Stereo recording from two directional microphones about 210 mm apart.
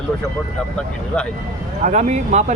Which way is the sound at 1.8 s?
35° right (ahead or behind).